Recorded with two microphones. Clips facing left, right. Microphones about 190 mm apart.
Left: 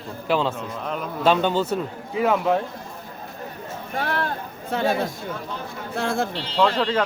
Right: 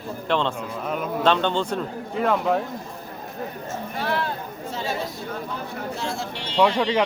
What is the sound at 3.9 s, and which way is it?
Speech, 50° left (ahead or behind).